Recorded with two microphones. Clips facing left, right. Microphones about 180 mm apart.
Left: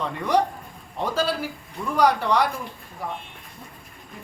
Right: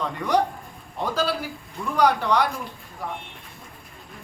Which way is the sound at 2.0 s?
5° left (ahead or behind).